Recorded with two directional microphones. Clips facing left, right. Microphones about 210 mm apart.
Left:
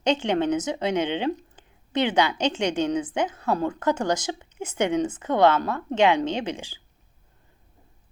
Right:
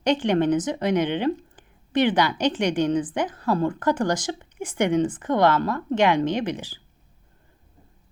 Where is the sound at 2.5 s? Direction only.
25° left (ahead or behind).